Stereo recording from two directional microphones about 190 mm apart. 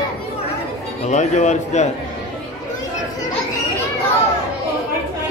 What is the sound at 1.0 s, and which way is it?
Speech, 40° left (ahead or behind).